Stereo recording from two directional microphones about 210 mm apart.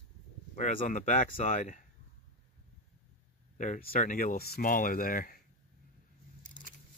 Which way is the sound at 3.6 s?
40° left (ahead or behind).